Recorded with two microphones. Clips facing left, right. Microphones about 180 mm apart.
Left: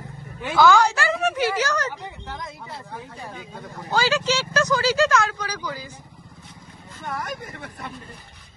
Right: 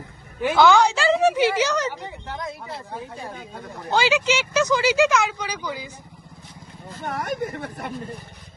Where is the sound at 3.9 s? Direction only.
20° right (ahead or behind).